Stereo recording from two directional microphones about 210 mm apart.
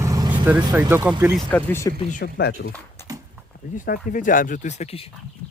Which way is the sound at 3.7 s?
40° left (ahead or behind).